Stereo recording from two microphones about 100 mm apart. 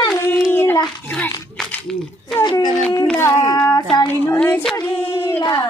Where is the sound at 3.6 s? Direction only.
40° left (ahead or behind).